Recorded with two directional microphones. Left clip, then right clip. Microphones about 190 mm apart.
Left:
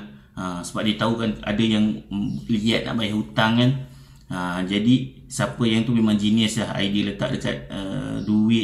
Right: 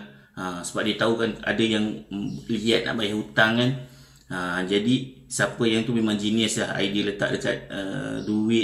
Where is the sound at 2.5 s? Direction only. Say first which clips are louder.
Right 1 dB; centre (ahead or behind).